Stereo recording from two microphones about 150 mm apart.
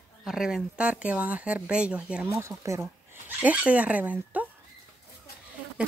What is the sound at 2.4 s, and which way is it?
Speech, 20° right (ahead or behind).